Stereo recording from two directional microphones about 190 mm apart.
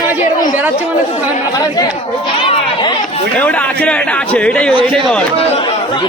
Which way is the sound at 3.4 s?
5° left (ahead or behind).